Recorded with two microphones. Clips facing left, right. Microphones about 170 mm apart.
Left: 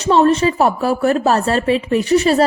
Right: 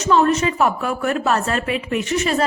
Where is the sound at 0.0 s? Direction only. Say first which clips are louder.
Left 4 dB; 30° left (ahead or behind).